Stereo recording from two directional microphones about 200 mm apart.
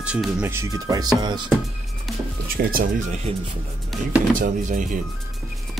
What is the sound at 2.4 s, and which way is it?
Speech, 45° right (ahead or behind).